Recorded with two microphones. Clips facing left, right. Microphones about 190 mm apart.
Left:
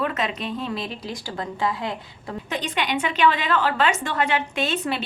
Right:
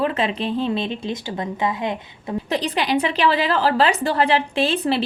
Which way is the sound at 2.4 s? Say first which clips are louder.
Right 4 dB; 35° right (ahead or behind).